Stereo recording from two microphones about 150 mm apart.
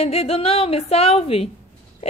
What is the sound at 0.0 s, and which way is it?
Speech, 45° left (ahead or behind).